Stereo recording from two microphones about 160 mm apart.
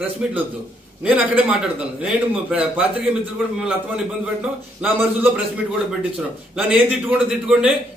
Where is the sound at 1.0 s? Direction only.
10° right (ahead or behind).